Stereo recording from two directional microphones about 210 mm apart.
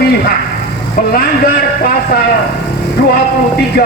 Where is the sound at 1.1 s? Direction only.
45° left (ahead or behind).